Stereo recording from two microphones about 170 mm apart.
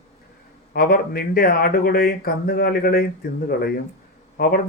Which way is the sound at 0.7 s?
60° left (ahead or behind).